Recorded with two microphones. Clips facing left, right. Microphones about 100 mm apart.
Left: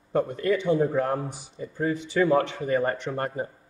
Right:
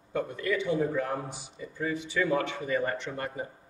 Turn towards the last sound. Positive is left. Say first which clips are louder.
# left 6 dB
turn(degrees=40)  # may be behind; listen again after turning